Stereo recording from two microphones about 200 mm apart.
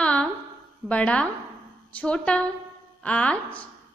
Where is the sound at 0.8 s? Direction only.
5° left (ahead or behind).